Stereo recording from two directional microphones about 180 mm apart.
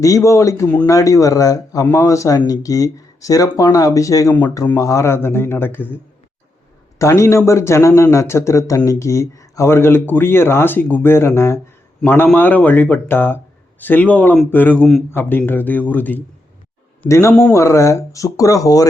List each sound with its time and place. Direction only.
0.0 s speech: 15° left (ahead or behind)
7.0 s speech: 15° left (ahead or behind)